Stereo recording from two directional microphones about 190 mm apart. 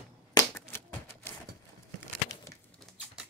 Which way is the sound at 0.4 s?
15° left (ahead or behind).